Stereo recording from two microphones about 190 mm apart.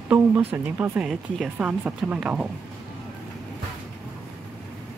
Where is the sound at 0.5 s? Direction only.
10° right (ahead or behind).